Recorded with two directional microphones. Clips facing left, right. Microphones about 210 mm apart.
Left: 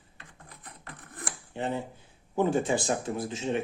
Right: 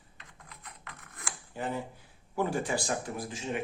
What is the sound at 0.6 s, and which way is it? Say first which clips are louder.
Rub: left 4 dB; 35° left (ahead or behind).